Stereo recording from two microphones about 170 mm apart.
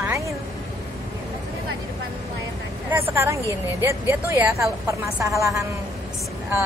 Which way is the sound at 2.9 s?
15° right (ahead or behind).